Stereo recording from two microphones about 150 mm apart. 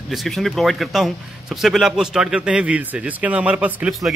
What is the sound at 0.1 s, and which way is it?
A man's voice, centre (ahead or behind).